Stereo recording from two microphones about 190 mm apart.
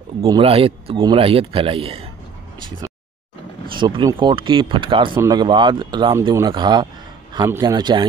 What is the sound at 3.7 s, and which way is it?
Speech, 25° right (ahead or behind).